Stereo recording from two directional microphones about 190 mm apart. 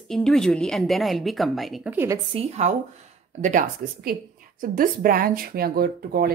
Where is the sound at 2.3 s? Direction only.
35° right (ahead or behind).